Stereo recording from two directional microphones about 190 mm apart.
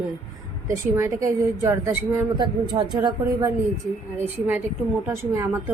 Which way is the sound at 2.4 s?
25° right (ahead or behind).